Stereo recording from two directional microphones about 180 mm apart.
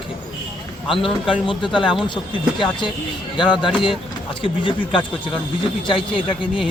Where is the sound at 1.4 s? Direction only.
25° left (ahead or behind).